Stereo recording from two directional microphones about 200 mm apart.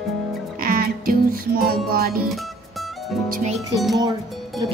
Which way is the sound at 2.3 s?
Centre (ahead or behind).